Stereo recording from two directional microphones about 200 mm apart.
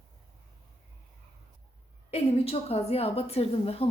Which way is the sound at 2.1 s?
30° left (ahead or behind).